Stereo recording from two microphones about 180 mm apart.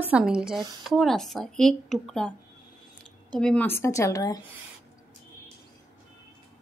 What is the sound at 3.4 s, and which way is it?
Speech, 5° left (ahead or behind).